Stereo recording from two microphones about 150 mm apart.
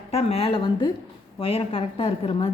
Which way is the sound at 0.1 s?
45° left (ahead or behind).